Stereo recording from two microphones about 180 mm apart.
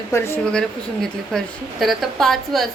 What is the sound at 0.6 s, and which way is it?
A woman's voice, centre (ahead or behind).